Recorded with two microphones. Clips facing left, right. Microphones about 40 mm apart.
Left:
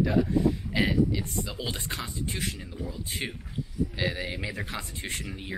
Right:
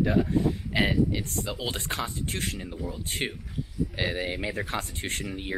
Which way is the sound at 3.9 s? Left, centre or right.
Right.